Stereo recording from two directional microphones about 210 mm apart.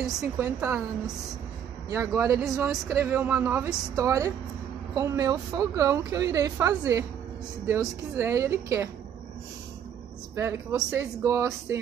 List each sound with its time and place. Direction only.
0.4 s a woman's voice: 15° right (ahead or behind)
1.9 s a woman's voice: 10° right (ahead or behind)
2.4 s a woman's voice: centre (ahead or behind)
10.3 s a woman's voice: 15° right (ahead or behind)